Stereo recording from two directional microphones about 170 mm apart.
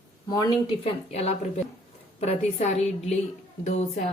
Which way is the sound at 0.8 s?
40° left (ahead or behind).